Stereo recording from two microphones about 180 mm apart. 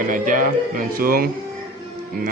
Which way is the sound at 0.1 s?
50° right (ahead or behind).